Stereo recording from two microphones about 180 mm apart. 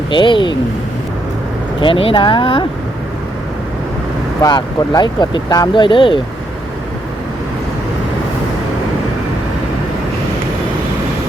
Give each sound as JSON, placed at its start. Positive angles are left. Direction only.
{"t": 0.1, "sound": "speech", "side_deg": 25}
{"t": 1.8, "sound": "speech", "side_deg": 30}
{"t": 4.4, "sound": "speech", "side_deg": 25}